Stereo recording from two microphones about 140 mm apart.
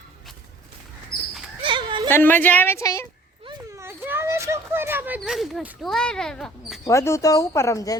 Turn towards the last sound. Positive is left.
turn(degrees=20)  # may be behind; listen again after turning